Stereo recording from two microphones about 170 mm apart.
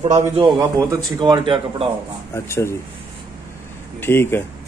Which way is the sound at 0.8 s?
25° right (ahead or behind).